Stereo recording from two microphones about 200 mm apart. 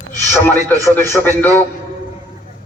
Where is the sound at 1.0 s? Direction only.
10° left (ahead or behind).